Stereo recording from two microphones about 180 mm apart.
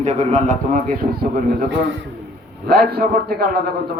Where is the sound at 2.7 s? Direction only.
60° right (ahead or behind).